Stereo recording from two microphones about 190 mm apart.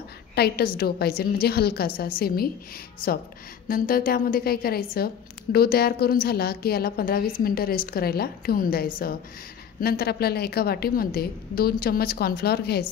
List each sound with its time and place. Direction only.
0.4 s a woman's voice: 55° left (ahead or behind)
3.6 s a woman's voice: 50° left (ahead or behind)